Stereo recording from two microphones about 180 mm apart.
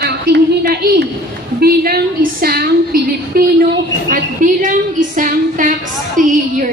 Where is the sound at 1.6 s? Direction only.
60° right (ahead or behind).